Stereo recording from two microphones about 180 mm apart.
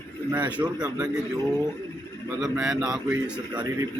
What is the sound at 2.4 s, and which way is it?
A man's voice, 5° right (ahead or behind).